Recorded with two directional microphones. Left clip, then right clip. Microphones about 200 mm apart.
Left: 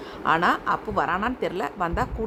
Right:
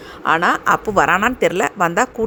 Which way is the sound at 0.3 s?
20° right (ahead or behind).